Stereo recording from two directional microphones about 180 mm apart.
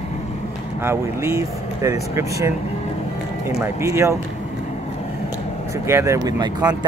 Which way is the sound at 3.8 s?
15° right (ahead or behind).